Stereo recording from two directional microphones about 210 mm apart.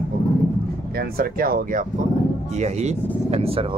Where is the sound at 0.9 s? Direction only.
45° right (ahead or behind).